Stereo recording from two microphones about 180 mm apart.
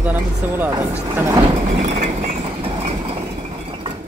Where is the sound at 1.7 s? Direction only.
35° right (ahead or behind).